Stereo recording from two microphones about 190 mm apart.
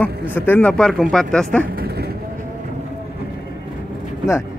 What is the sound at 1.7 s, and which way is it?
Vehicle, 55° right (ahead or behind).